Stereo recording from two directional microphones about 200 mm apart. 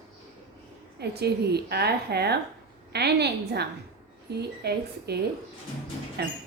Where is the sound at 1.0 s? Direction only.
55° right (ahead or behind).